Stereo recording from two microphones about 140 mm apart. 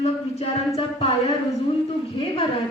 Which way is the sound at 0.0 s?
50° left (ahead or behind).